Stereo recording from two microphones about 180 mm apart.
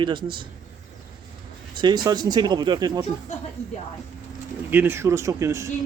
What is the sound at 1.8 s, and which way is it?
A man's voice, 25° right (ahead or behind).